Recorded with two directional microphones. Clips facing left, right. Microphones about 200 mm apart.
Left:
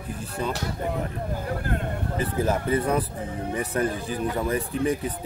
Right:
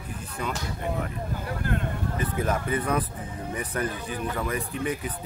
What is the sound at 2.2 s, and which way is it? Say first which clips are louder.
Speech: left 3 dB; 30° left (ahead or behind).